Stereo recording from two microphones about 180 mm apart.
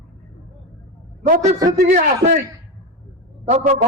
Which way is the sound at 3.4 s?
45° right (ahead or behind).